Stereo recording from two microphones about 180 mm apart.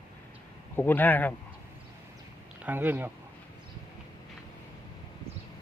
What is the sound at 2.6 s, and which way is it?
Speech, 10° right (ahead or behind).